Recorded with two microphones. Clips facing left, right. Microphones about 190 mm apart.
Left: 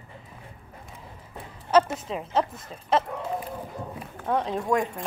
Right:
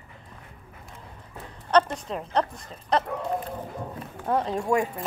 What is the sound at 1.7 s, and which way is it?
A woman's voice, 5° left (ahead or behind).